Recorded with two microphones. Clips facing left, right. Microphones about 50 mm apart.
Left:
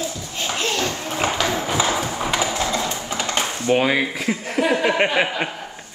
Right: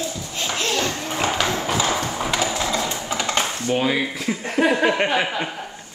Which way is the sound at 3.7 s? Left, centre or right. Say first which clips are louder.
Left 4 dB; left.